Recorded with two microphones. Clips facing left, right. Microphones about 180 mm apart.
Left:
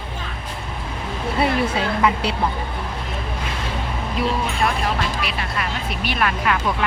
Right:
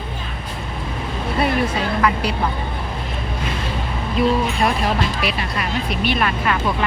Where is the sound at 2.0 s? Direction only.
15° left (ahead or behind).